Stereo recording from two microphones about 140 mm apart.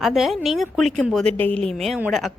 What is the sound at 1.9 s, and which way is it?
Speech, 10° right (ahead or behind).